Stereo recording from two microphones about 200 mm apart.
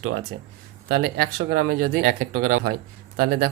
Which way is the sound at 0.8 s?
50° right (ahead or behind).